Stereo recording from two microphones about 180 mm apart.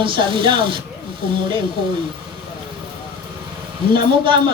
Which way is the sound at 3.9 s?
25° right (ahead or behind).